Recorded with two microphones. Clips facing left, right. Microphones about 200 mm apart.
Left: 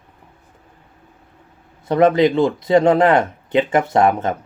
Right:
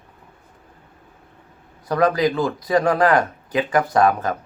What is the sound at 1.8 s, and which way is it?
Speech, 25° left (ahead or behind).